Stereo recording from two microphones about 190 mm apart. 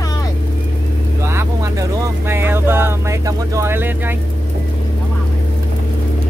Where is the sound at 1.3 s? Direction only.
15° right (ahead or behind).